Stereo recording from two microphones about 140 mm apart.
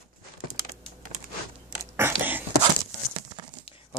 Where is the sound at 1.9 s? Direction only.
15° right (ahead or behind).